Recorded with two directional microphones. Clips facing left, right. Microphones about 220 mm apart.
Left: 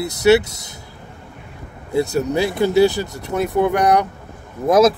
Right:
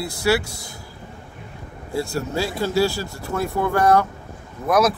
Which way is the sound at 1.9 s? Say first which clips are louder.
Left 6 dB; 20° left (ahead or behind).